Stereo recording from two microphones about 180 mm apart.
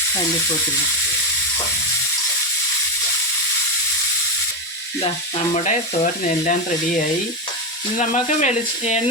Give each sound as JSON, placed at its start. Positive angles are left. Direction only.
{"t": 5.5, "sound": "stir", "side_deg": 40}
{"t": 7.9, "sound": "speech", "side_deg": 40}